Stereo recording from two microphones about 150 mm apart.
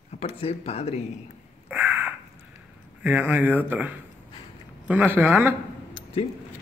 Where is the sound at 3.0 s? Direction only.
10° right (ahead or behind).